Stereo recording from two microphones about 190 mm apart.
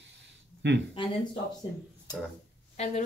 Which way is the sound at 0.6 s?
70° right (ahead or behind).